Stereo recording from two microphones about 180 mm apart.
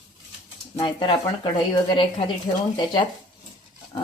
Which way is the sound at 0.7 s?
25° left (ahead or behind).